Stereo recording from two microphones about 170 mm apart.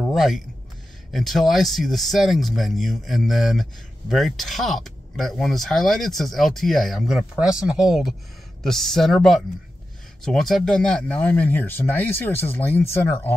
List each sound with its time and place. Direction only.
0.1 s speech: centre (ahead or behind)